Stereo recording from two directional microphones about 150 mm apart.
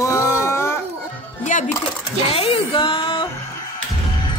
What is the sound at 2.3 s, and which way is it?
Music, 40° left (ahead or behind).